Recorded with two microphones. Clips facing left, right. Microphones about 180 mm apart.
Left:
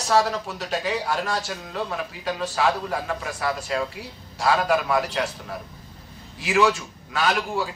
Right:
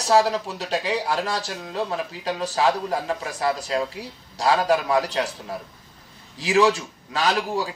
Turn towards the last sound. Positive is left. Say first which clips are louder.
# right 1 dB
turn(degrees=-35)  # may be behind; listen again after turning